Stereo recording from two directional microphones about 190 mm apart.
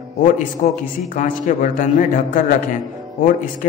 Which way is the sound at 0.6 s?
40° left (ahead or behind).